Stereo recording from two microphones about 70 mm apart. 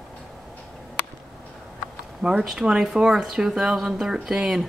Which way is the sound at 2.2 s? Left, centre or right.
Centre.